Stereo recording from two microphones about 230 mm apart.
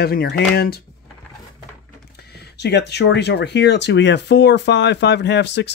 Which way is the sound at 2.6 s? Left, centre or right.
Left.